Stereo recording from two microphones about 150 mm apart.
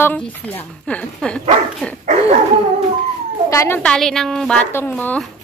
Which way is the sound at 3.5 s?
20° left (ahead or behind).